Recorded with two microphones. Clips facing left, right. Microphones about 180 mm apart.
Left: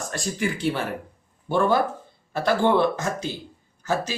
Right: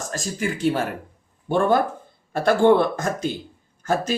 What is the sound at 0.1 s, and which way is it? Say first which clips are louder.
Speech: even; 40° right (ahead or behind).